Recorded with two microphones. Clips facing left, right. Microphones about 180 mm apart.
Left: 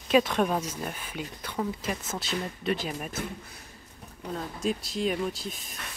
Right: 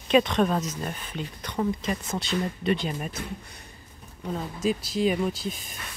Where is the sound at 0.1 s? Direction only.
5° left (ahead or behind).